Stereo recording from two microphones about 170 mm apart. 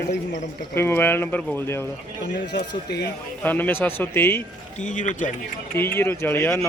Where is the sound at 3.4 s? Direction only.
10° left (ahead or behind).